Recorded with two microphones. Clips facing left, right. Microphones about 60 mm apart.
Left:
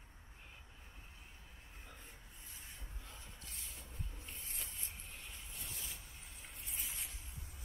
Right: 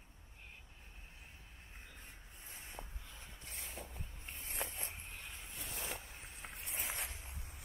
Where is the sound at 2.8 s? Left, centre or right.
Right.